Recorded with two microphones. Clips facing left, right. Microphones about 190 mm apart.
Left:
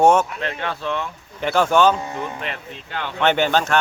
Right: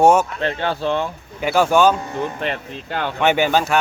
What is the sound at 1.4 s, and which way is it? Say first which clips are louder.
Speech: right 1 dB; 10° right (ahead or behind).